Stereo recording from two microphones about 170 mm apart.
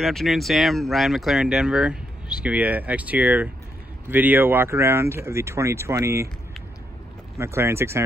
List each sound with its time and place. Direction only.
0.0 s speech: centre (ahead or behind); by 6.2 s 15° right (ahead or behind)
7.3 s speech: 15° right (ahead or behind)